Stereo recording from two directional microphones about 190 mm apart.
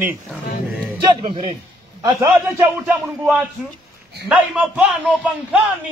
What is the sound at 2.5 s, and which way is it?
A man's voice, 5° right (ahead or behind).